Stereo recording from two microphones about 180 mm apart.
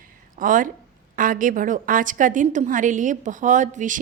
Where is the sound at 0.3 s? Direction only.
50° right (ahead or behind).